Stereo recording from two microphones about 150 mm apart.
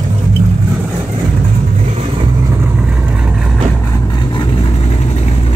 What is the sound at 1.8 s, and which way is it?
Vehicle, 45° right (ahead or behind).